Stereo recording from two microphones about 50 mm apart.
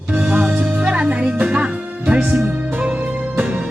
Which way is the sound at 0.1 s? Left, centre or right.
Right.